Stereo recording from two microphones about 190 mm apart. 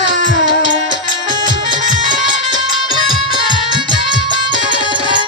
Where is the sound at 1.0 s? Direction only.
25° right (ahead or behind).